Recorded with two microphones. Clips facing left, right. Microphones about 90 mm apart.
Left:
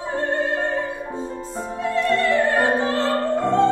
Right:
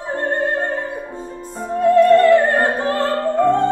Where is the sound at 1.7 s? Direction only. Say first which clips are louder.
Right 10 dB; 50° right (ahead or behind).